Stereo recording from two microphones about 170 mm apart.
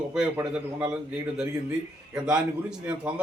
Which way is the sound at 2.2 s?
5° right (ahead or behind).